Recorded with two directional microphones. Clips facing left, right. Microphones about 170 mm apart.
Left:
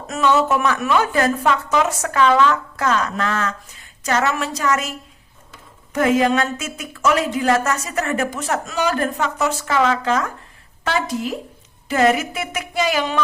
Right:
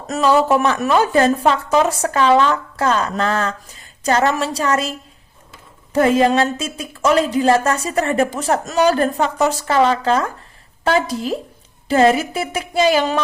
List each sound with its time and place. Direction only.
0.1 s a woman's voice: 35° right (ahead or behind)